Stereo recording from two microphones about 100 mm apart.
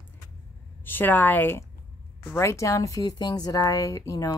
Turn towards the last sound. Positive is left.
turn(degrees=35)  # may be behind; listen again after turning